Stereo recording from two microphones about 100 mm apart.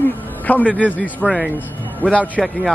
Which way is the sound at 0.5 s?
15° left (ahead or behind).